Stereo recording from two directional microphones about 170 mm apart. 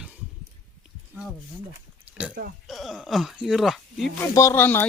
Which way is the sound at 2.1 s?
10° right (ahead or behind).